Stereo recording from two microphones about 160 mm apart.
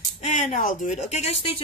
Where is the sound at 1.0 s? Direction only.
45° left (ahead or behind).